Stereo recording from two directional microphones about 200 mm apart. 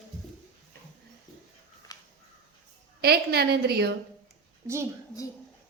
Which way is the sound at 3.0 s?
50° right (ahead or behind).